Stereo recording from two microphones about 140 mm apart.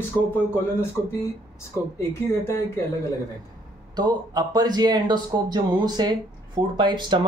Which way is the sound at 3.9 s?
30° right (ahead or behind).